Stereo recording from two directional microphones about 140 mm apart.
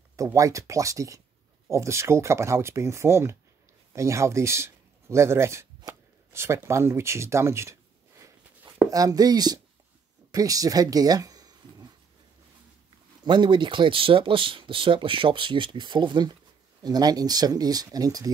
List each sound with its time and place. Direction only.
0.1 s speech: 25° right (ahead or behind)
8.9 s speech: 25° right (ahead or behind)
13.2 s speech: 35° right (ahead or behind)